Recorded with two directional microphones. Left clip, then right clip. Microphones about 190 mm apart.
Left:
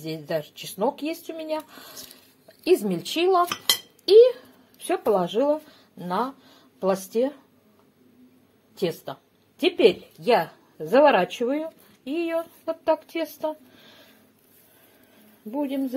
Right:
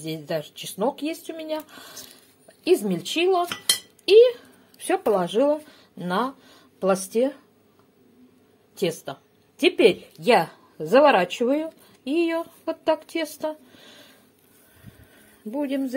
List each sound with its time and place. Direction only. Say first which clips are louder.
0.0 s a woman's voice: even; 10° right (ahead or behind)
4.8 s speech: right 1 dB; 15° right (ahead or behind)
8.7 s speech: right 1 dB; 10° right (ahead or behind)
15.5 s speech: right 1 dB; 20° right (ahead or behind)